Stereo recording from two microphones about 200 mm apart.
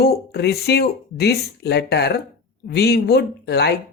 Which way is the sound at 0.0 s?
55° left (ahead or behind).